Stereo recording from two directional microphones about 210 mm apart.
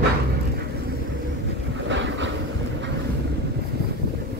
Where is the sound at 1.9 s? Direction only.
60° right (ahead or behind).